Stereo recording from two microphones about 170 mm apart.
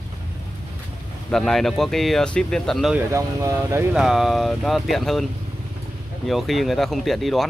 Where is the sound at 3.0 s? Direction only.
15° right (ahead or behind).